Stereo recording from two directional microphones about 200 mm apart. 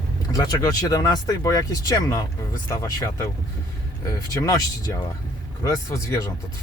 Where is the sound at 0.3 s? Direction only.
20° left (ahead or behind).